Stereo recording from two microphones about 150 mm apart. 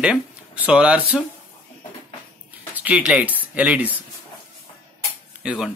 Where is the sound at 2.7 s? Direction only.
10° right (ahead or behind).